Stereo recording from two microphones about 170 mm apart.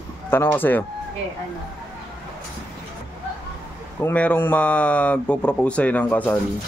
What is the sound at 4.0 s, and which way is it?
Speech, 10° left (ahead or behind).